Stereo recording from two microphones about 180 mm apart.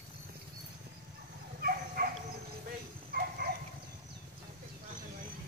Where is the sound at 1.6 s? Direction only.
55° right (ahead or behind).